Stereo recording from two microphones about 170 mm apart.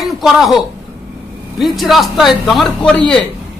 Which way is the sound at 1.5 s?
Centre (ahead or behind).